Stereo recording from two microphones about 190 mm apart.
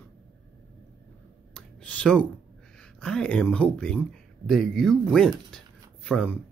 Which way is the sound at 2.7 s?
5° left (ahead or behind).